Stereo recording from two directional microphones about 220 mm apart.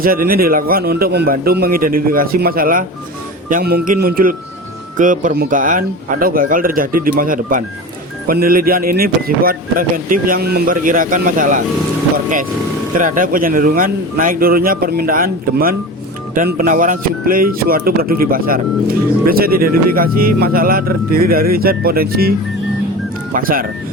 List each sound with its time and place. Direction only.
0.0 s speech: 40° right (ahead or behind)